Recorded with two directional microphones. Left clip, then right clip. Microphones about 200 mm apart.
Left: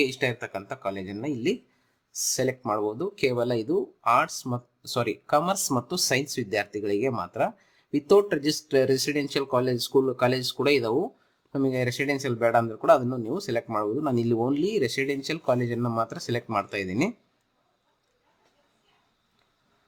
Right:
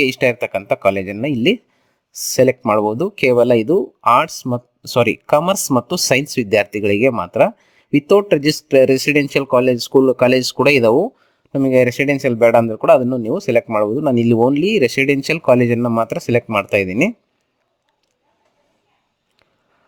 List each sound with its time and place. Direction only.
0.0 s speech: 50° right (ahead or behind)